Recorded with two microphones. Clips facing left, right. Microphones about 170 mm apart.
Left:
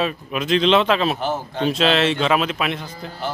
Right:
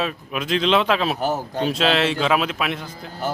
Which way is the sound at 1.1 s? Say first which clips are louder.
Right 1 dB; 40° right (ahead or behind).